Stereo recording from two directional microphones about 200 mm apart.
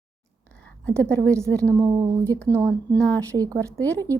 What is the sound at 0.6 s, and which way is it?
Speech, 5° left (ahead or behind).